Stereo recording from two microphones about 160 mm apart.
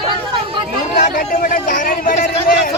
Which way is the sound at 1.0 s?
55° left (ahead or behind).